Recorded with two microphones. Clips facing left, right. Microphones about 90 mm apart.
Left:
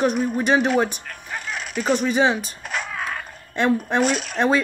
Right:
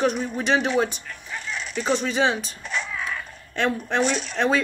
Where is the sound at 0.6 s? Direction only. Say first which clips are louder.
Left 3 dB; 50° left (ahead or behind).